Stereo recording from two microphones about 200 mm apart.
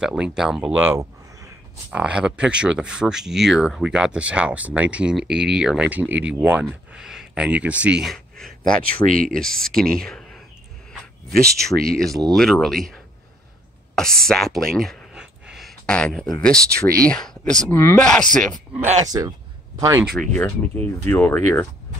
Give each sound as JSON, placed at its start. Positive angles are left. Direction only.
{"t": 0.0, "sound": "speech", "side_deg": -5}
{"t": 8.8, "sound": "speech", "side_deg": -45}
{"t": 9.3, "sound": "speech", "side_deg": 5}
{"t": 11.9, "sound": "speech", "side_deg": 0}
{"t": 14.2, "sound": "a sound", "side_deg": 0}
{"t": 16.3, "sound": "speech", "side_deg": 5}
{"t": 16.7, "sound": "speech", "side_deg": -50}
{"t": 17.1, "sound": "speech", "side_deg": 5}
{"t": 19.0, "sound": "a man's voice", "side_deg": -20}
{"t": 20.2, "sound": "speech", "side_deg": 10}